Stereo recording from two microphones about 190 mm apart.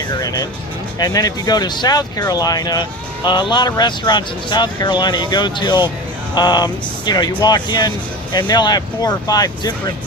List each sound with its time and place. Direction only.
0.1 s speech: 20° left (ahead or behind)